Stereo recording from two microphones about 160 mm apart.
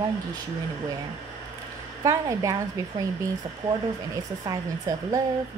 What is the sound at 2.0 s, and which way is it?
Speech, 20° right (ahead or behind).